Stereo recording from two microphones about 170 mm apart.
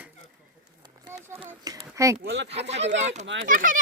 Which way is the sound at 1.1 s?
15° right (ahead or behind).